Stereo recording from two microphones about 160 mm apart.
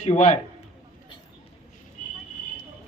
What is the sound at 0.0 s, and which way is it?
Speech, 45° left (ahead or behind).